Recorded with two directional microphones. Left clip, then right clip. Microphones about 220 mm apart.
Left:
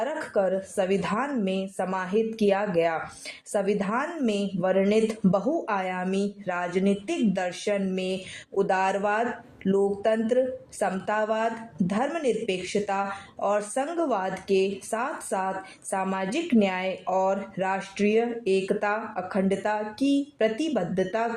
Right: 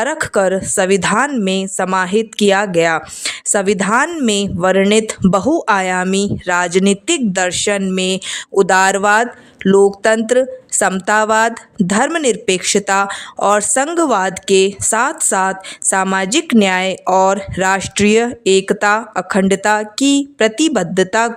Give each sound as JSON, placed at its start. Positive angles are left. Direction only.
{"t": 0.0, "sound": "a woman's voice", "side_deg": -35}